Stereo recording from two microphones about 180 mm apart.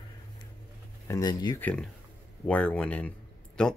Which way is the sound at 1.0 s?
20° left (ahead or behind).